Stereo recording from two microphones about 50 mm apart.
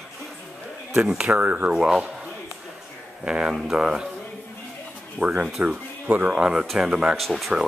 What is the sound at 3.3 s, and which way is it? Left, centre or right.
Speech, centre.